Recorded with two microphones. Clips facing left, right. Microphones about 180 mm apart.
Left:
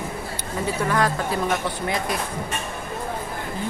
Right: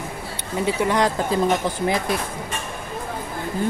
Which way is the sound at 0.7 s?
20° right (ahead or behind).